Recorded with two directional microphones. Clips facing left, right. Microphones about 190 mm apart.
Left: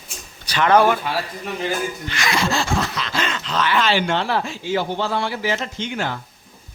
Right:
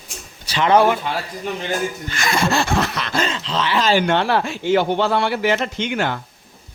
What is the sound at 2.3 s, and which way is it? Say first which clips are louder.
Speech: right 2 dB; 55° right (ahead or behind).